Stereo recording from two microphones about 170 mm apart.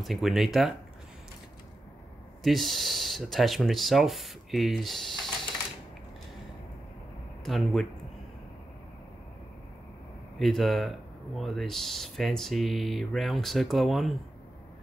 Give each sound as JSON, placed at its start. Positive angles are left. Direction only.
{"t": 0.0, "sound": "speech", "side_deg": 0}
{"t": 2.4, "sound": "speech", "side_deg": 0}
{"t": 7.4, "sound": "speech", "side_deg": 0}
{"t": 10.4, "sound": "speech", "side_deg": 0}